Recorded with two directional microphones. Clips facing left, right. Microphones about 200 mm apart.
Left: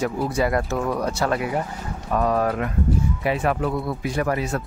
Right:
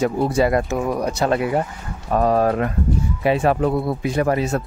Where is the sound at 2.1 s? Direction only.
30° right (ahead or behind).